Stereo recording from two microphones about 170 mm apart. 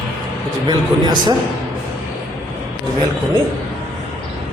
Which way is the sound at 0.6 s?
25° right (ahead or behind).